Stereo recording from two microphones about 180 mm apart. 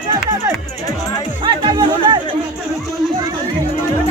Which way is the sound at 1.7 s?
25° right (ahead or behind).